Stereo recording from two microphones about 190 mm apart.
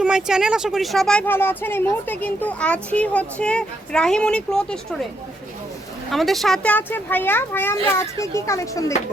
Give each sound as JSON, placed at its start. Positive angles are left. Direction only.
{"t": 0.0, "sound": "speech", "side_deg": -5}
{"t": 6.1, "sound": "a child's voice", "side_deg": 0}